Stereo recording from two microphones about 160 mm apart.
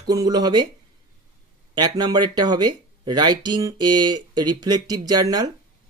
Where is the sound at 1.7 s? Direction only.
25° right (ahead or behind).